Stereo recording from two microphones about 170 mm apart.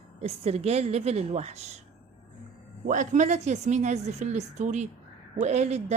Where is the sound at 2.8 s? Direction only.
50° right (ahead or behind).